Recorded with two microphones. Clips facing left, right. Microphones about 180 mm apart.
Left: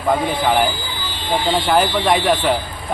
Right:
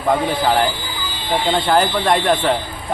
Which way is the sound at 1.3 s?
Centre (ahead or behind).